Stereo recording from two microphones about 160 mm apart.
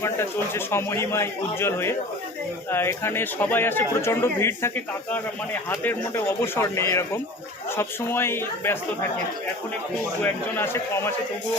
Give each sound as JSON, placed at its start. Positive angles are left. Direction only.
{"t": 0.0, "sound": "speech", "side_deg": 15}
{"t": 10.5, "sound": "speech", "side_deg": 15}